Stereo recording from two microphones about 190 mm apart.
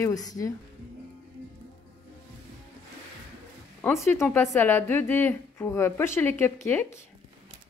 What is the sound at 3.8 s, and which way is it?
A woman's voice, 15° left (ahead or behind).